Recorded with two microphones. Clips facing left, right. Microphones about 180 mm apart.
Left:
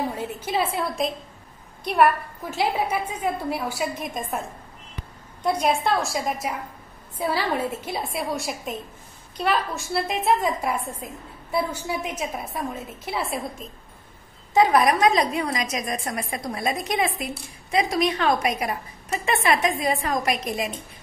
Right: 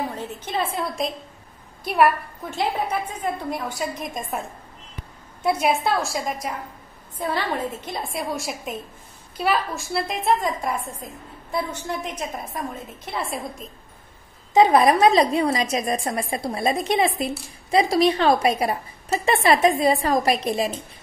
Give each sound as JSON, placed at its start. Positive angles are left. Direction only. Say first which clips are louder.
{"t": 0.1, "sound": "a woman's voice", "louder": "left 2 dB", "side_deg": 10}
{"t": 14.5, "sound": "a woman's voice", "louder": "right 3 dB", "side_deg": -25}